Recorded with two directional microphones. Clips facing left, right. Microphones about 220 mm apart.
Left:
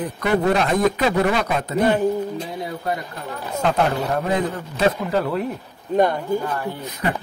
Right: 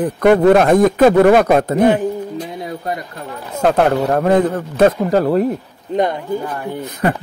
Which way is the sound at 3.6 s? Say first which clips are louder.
Right 7 dB; 55° right (ahead or behind).